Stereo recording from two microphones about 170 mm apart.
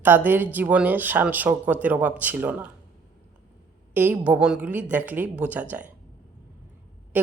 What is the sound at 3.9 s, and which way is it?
Speech, 10° right (ahead or behind).